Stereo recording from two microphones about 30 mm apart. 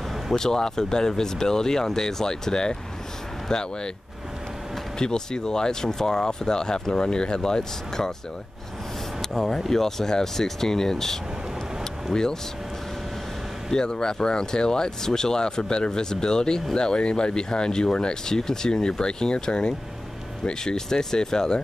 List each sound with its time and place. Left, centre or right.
0.3 s speech: centre
4.9 s speech: left
9.2 s speech: centre
11.8 s vehicle: left
13.7 s speech: left